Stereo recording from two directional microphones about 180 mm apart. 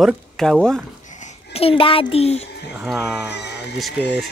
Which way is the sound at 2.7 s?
5° right (ahead or behind).